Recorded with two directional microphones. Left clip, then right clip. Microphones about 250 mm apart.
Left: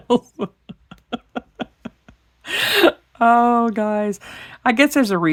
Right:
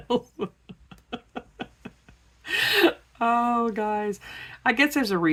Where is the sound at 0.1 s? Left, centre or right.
Left.